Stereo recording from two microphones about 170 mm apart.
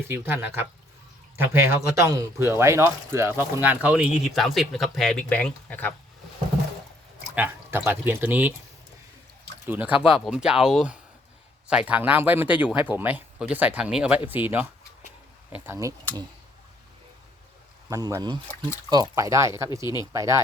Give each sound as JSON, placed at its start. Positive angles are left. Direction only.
{"t": 0.1, "sound": "a man's voice", "side_deg": -10}
{"t": 7.3, "sound": "a man's voice", "side_deg": -10}
{"t": 9.6, "sound": "a man's voice", "side_deg": -10}
{"t": 17.8, "sound": "a man's voice", "side_deg": -20}